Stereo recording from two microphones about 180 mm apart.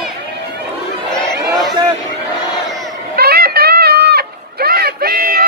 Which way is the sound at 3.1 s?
60° right (ahead or behind).